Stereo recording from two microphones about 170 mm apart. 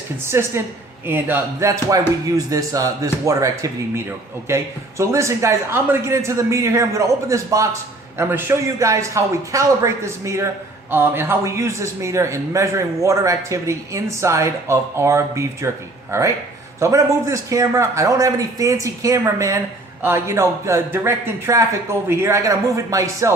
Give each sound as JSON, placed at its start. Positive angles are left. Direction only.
{"t": 0.3, "sound": "a man's voice", "side_deg": -15}